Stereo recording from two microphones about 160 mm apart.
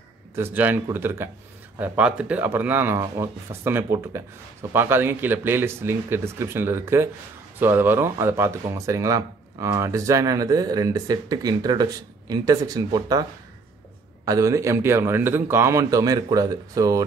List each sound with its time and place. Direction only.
0.4 s speech: 10° right (ahead or behind)
14.2 s speech: 20° right (ahead or behind)